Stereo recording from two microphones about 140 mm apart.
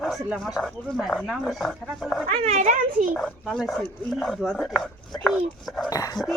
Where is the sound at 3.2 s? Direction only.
Centre (ahead or behind).